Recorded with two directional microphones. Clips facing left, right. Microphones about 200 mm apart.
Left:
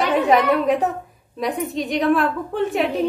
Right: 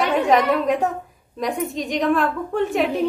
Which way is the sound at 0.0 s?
Centre (ahead or behind).